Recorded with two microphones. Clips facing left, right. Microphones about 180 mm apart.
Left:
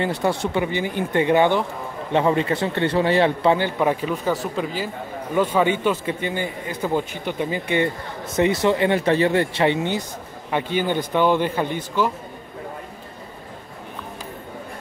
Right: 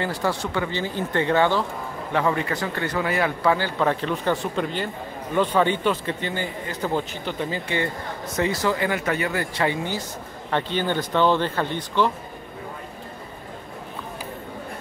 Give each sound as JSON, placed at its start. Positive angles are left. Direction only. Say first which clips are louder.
{"t": 0.0, "sound": "a man's voice", "louder": "left 3 dB", "side_deg": 20}
{"t": 10.5, "sound": "a man's voice", "louder": "left 2 dB", "side_deg": 10}